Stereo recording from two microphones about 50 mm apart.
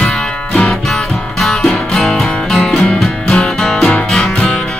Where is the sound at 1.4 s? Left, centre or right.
Centre.